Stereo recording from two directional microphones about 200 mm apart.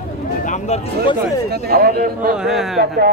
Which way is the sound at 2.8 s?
55° right (ahead or behind).